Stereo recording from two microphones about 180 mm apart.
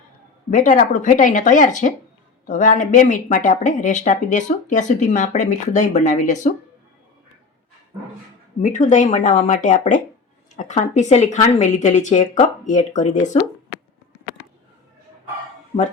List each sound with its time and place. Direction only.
0.5 s speech: 45° left (ahead or behind)
8.6 s a woman's voice: 45° left (ahead or behind)